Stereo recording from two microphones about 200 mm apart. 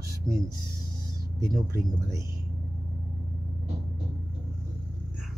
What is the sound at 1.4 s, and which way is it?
Speech, 15° right (ahead or behind).